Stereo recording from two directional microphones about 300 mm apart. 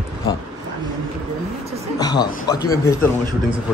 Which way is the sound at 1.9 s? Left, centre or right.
Centre.